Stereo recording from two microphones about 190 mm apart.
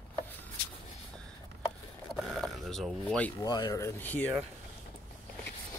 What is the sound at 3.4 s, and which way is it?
Speech, 20° left (ahead or behind).